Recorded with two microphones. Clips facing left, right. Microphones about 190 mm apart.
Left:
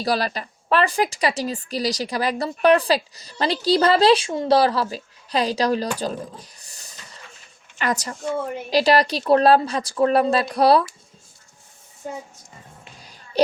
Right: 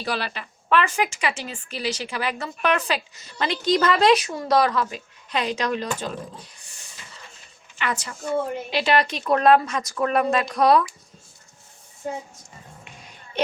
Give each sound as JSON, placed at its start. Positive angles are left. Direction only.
{"t": 0.0, "sound": "a woman's voice", "side_deg": 35}
{"t": 6.6, "sound": "vehicle", "side_deg": 40}
{"t": 7.8, "sound": "a woman's voice", "side_deg": 40}
{"t": 12.0, "sound": "speech", "side_deg": 0}
{"t": 12.8, "sound": "a sound", "side_deg": 35}